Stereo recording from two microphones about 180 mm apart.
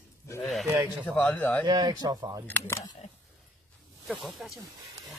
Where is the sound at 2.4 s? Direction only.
10° left (ahead or behind).